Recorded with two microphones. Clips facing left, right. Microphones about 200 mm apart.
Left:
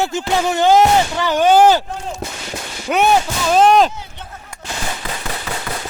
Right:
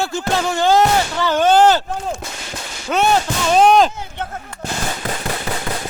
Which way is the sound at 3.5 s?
Centre (ahead or behind).